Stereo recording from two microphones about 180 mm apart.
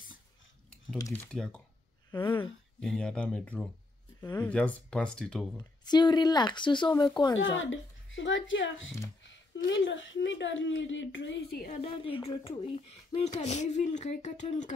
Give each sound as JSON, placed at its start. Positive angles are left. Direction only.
{"t": 0.9, "sound": "speech", "side_deg": 15}
{"t": 1.3, "sound": "speech", "side_deg": 5}
{"t": 2.0, "sound": "speech", "side_deg": 25}
{"t": 2.8, "sound": "speech", "side_deg": 5}
{"t": 5.6, "sound": "speech", "side_deg": 25}
{"t": 7.3, "sound": "speech", "side_deg": 90}
{"t": 11.8, "sound": "speech", "side_deg": 30}